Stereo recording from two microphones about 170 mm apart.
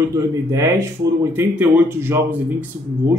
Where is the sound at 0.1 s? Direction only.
20° right (ahead or behind).